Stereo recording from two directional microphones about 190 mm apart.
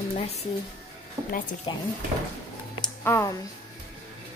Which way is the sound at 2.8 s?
15° left (ahead or behind).